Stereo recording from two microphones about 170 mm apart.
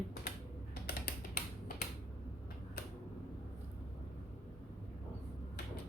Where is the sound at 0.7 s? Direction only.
65° left (ahead or behind).